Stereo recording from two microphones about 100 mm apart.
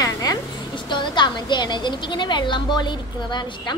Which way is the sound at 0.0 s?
40° left (ahead or behind).